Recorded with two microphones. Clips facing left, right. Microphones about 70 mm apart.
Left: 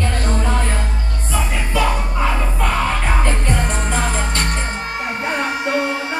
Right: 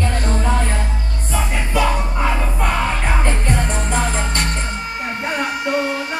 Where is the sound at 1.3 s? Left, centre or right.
Centre.